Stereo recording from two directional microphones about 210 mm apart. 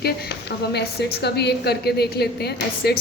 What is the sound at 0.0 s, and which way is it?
A woman's voice, 50° left (ahead or behind).